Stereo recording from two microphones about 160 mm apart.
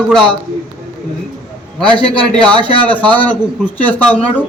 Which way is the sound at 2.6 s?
10° left (ahead or behind).